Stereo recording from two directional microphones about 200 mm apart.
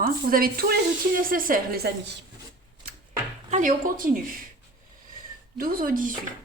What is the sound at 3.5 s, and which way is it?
Speech, 40° right (ahead or behind).